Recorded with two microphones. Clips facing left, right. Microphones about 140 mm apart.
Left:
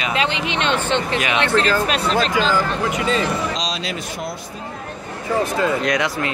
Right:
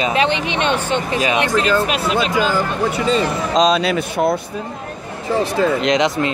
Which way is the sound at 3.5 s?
55° right (ahead or behind).